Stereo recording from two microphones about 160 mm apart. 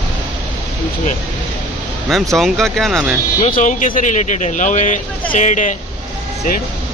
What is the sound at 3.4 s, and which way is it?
Speech, 50° left (ahead or behind).